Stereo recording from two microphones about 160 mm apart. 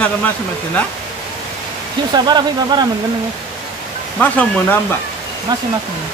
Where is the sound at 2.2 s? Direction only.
25° right (ahead or behind).